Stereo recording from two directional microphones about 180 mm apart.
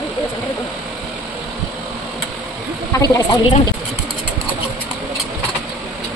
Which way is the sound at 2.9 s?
20° left (ahead or behind).